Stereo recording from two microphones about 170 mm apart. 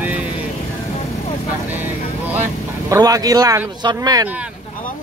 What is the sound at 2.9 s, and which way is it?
Speech, 20° right (ahead or behind).